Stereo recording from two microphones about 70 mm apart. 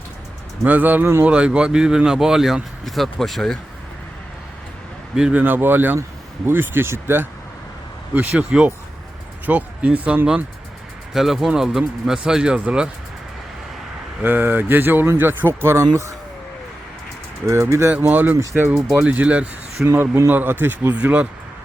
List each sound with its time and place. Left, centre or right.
0.6 s speech: right; by 3.6 s centre
5.1 s speech: centre
5.4 s speech: right
8.1 s speech: right
8.4 s speech: centre
11.1 s speech: centre
14.2 s speech: right
15.6 s speech: right
17.4 s speech: right
18.0 s speech: right
19.0 s speech: centre
19.8 s speech: right
20.9 s speech: right